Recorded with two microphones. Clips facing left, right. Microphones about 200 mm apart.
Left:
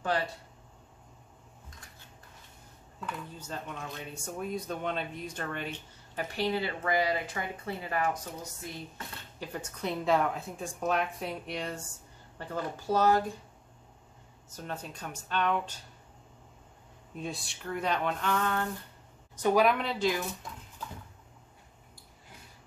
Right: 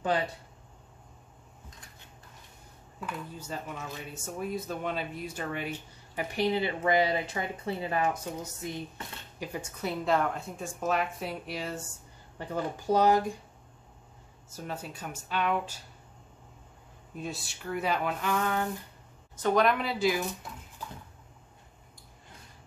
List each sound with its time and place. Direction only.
0.0 s speech: 20° right (ahead or behind)
3.0 s speech: 10° right (ahead or behind); by 8.2 s 25° right (ahead or behind)
9.4 s a woman's voice: 10° right (ahead or behind)
12.4 s speech: 15° right (ahead or behind)
14.5 s speech: 10° right (ahead or behind)
17.1 s a woman's voice: centre (ahead or behind)
19.3 s a woman's voice: 10° left (ahead or behind); by 20.2 s 5° right (ahead or behind)